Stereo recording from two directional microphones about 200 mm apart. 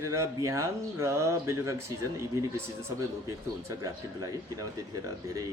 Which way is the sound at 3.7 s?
15° right (ahead or behind).